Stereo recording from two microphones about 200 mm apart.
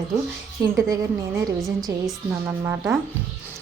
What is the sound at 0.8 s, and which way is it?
Speech, 15° right (ahead or behind).